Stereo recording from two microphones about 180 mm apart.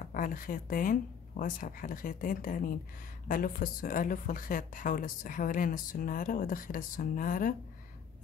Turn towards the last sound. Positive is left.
turn(degrees=50)  # may be behind; listen again after turning